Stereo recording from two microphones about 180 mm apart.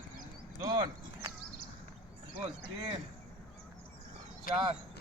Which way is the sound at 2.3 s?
25° right (ahead or behind).